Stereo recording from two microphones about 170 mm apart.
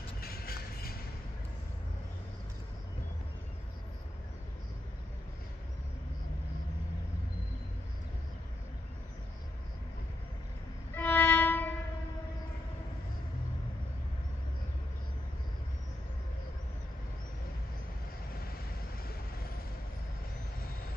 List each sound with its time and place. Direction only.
0.2 s music: 60° left (ahead or behind)
11.0 s violin: 10° left (ahead or behind)